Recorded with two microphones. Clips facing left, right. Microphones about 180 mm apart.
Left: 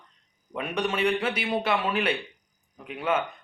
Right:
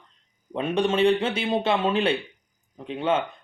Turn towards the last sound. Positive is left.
turn(degrees=-25)  # may be behind; listen again after turning